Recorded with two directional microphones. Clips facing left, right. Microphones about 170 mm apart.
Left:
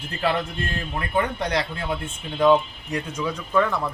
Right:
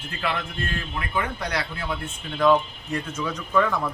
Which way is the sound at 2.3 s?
15° left (ahead or behind).